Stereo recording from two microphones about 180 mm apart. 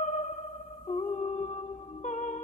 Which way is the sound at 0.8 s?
40° left (ahead or behind).